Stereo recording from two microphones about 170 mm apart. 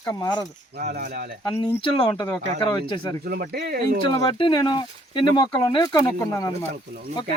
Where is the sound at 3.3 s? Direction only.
65° right (ahead or behind).